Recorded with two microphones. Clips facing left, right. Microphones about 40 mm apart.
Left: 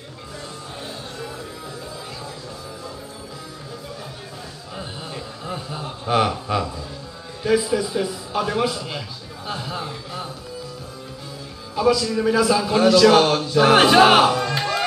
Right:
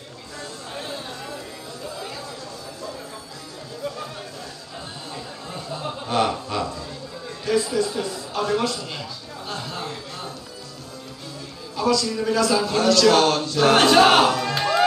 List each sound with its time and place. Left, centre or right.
5.1 s a sound: centre
7.4 s a man's voice: centre
9.5 s music: centre
11.7 s a man's voice: centre